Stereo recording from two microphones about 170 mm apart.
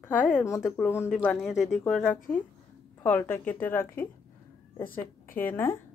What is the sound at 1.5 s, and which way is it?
Speech, 45° left (ahead or behind).